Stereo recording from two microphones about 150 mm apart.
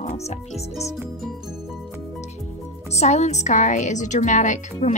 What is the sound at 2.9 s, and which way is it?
A woman's voice, 45° left (ahead or behind).